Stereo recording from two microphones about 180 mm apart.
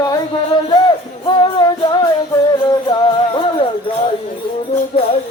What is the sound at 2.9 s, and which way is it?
Music, 30° left (ahead or behind).